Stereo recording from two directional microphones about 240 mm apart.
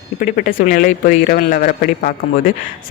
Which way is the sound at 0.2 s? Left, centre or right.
Left.